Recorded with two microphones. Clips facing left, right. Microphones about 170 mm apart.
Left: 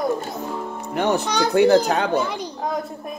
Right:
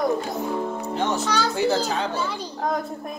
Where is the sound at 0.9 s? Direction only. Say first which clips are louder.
Left 5 dB; 65° left (ahead or behind).